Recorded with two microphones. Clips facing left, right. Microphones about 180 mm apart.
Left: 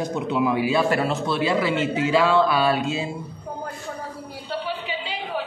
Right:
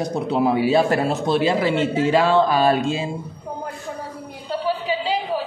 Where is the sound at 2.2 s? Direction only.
40° right (ahead or behind).